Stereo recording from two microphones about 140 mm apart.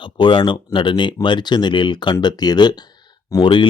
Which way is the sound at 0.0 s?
35° left (ahead or behind).